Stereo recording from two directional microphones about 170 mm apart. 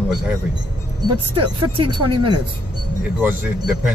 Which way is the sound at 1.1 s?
30° right (ahead or behind).